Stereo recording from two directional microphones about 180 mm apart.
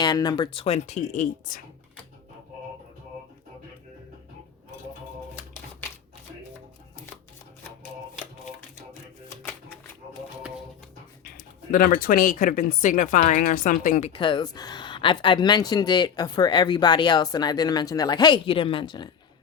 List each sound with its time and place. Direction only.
0.0 s speech: 20° left (ahead or behind); by 1.6 s 45° left (ahead or behind)
11.7 s speech: 50° left (ahead or behind)
14.1 s speech: 25° left (ahead or behind)